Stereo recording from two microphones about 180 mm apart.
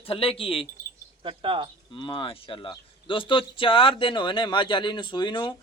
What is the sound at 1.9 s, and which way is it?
Speech, 25° left (ahead or behind).